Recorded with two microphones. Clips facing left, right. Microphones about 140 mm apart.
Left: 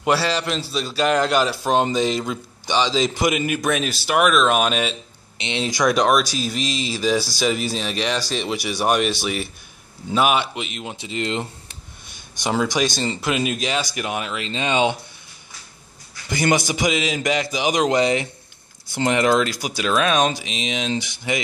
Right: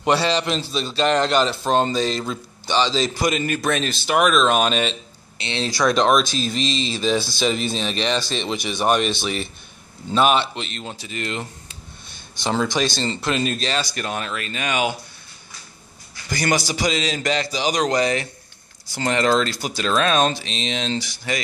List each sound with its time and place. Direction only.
0.0 s a man's voice: 5° left (ahead or behind)
5.4 s a man's voice: 15° left (ahead or behind)
16.3 s a man's voice: 20° left (ahead or behind)